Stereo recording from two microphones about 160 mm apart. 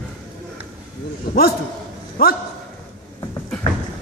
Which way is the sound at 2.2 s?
60° left (ahead or behind).